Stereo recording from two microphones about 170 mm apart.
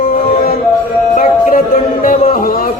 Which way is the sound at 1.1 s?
50° left (ahead or behind).